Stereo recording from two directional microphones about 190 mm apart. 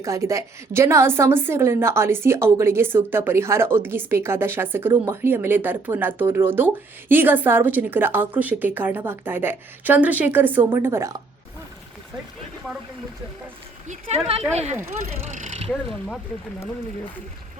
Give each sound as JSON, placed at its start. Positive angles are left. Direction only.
{"t": 0.0, "sound": "a woman's voice", "side_deg": -15}
{"t": 13.8, "sound": "speech", "side_deg": -35}